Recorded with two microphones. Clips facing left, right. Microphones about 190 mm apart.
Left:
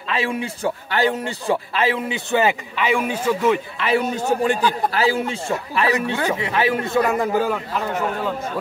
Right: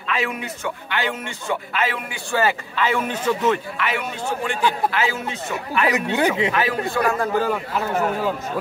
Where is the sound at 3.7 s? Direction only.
35° left (ahead or behind).